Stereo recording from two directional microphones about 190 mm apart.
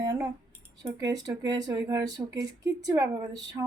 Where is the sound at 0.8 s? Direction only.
20° right (ahead or behind).